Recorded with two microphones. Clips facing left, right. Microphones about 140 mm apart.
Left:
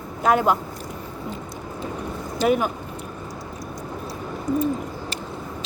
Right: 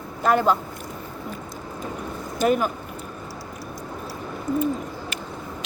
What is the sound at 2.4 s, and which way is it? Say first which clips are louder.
Speech: even; 5° left (ahead or behind).